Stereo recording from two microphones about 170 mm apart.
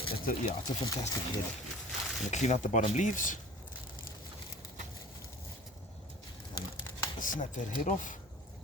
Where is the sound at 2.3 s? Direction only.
45° left (ahead or behind).